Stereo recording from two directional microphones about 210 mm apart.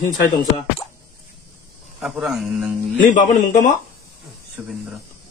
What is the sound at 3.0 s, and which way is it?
Speech, 35° left (ahead or behind).